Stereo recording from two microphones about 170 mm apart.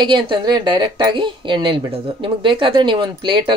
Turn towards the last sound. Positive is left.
turn(degrees=-30)  # may be behind; listen again after turning